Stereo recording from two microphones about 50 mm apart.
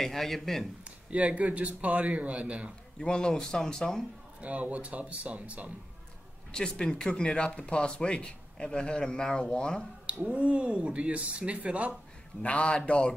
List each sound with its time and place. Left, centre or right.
0.0 s speech: centre
0.8 s speech: right
3.0 s speech: centre
4.4 s speech: right
6.5 s speech: centre
10.2 s speech: right
12.4 s a man's voice: left